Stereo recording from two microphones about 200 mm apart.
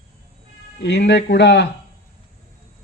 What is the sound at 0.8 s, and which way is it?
Speech, 60° left (ahead or behind).